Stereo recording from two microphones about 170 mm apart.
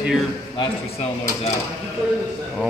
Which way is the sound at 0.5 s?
35° left (ahead or behind).